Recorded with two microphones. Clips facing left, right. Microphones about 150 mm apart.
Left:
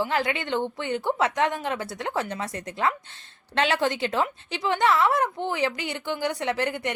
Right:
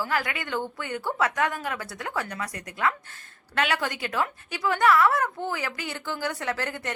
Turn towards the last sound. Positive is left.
turn(degrees=20)  # may be behind; listen again after turning